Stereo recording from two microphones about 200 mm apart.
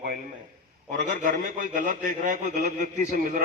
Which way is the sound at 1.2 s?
40° right (ahead or behind).